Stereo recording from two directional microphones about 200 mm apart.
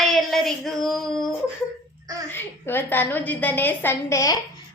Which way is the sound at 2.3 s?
10° left (ahead or behind).